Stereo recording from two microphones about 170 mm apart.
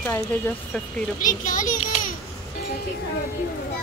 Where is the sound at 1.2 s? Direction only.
50° left (ahead or behind).